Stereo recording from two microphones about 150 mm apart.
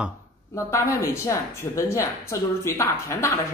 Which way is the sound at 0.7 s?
20° left (ahead or behind).